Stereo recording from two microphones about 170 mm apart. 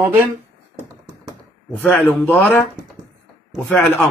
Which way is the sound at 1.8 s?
5° left (ahead or behind).